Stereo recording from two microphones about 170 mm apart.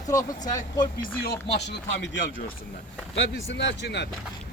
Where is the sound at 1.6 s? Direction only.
90° left.